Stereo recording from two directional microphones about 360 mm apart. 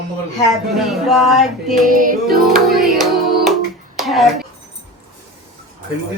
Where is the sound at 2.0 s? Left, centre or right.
Right.